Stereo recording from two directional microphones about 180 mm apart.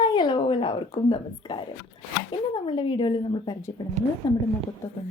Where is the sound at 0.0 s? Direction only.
25° left (ahead or behind).